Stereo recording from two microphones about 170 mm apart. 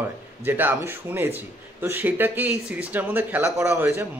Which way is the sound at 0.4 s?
10° right (ahead or behind).